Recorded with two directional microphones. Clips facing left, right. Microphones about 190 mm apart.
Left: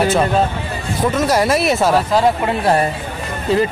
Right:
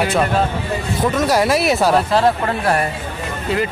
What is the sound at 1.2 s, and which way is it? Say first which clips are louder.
Speech: left 1 dB; centre (ahead or behind).